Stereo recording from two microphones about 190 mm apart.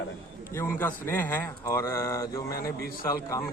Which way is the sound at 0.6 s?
10° left (ahead or behind).